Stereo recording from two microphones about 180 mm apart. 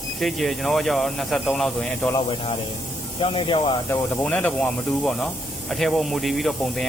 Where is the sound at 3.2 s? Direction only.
25° left (ahead or behind).